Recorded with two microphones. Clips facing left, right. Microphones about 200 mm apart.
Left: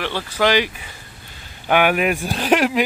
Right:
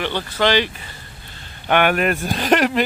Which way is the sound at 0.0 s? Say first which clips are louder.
Even; 5° left (ahead or behind).